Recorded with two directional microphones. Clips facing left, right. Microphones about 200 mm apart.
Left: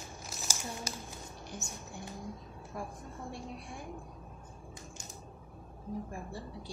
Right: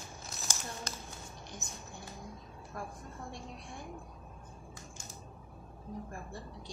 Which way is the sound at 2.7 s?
5° left (ahead or behind).